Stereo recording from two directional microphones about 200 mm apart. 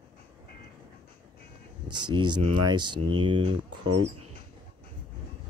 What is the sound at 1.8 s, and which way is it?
Speech, 20° right (ahead or behind).